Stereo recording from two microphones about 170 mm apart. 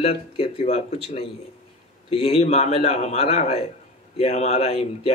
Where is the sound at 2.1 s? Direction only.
35° left (ahead or behind).